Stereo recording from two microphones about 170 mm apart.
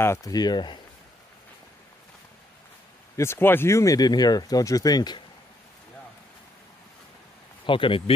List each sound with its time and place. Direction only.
0.0 s speech: 20° left (ahead or behind)
3.2 s speech: 15° left (ahead or behind)
7.6 s speech: 30° left (ahead or behind)